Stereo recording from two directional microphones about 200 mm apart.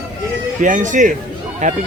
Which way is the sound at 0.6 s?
40° right (ahead or behind).